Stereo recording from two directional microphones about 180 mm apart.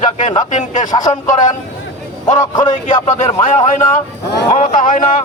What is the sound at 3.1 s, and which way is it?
A man's voice, 40° left (ahead or behind).